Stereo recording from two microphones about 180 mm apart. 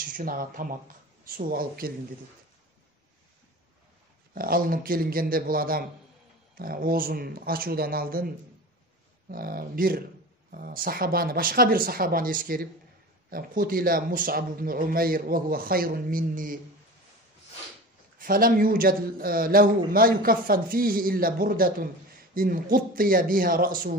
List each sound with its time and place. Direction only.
0.2 s speech: 50° right (ahead or behind)
4.3 s speech: 50° right (ahead or behind)
9.3 s speech: 55° right (ahead or behind)
18.2 s speech: 50° right (ahead or behind)